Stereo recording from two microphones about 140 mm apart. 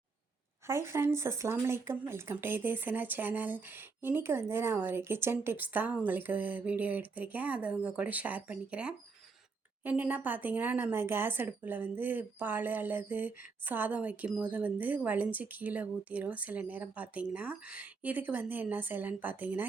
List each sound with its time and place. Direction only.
0.7 s a woman's voice: 20° right (ahead or behind)